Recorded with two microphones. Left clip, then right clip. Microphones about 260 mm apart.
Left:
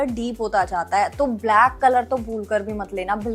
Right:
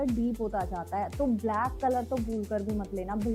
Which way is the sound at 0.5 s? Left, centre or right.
Centre.